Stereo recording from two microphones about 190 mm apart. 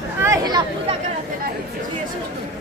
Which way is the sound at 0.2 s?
15° right (ahead or behind).